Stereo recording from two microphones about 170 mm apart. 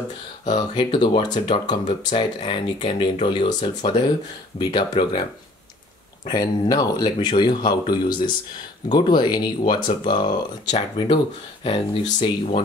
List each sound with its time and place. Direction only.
0.5 s speech: 30° left (ahead or behind)
6.2 s speech: 25° left (ahead or behind)